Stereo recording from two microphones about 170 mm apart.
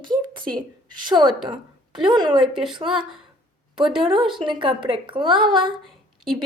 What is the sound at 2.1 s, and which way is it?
Speech, 25° right (ahead or behind).